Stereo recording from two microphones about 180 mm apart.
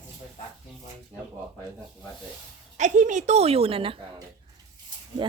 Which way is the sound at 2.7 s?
40° right (ahead or behind).